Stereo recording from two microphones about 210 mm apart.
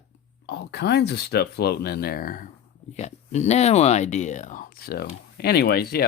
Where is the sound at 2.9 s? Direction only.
30° left (ahead or behind).